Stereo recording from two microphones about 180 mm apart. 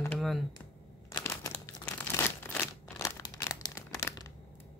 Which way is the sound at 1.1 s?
15° left (ahead or behind).